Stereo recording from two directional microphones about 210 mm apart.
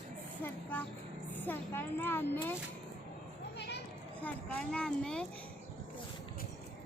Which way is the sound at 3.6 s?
55° left (ahead or behind).